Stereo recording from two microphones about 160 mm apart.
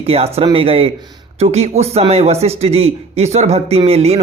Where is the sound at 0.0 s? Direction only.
40° right (ahead or behind).